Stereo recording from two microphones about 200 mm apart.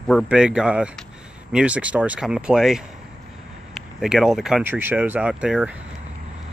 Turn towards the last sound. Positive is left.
turn(degrees=-5)  # may be behind; listen again after turning